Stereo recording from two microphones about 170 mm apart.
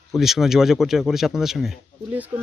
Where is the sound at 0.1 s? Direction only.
Centre (ahead or behind).